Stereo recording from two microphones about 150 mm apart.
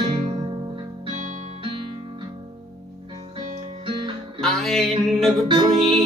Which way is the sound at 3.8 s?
35° right (ahead or behind).